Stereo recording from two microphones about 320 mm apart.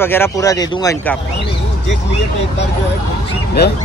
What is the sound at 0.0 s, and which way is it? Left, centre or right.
Speech, centre.